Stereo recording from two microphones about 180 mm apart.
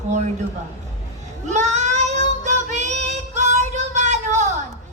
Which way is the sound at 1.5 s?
40° right (ahead or behind).